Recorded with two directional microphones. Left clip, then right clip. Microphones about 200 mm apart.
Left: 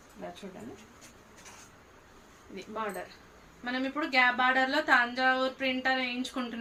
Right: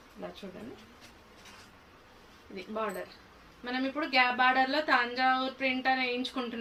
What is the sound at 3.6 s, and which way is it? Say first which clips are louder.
A woman's voice: left 1 dB; 15° left (ahead or behind).